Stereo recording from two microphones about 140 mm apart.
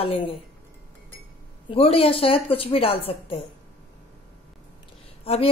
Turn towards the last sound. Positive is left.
turn(degrees=45)  # may be behind; listen again after turning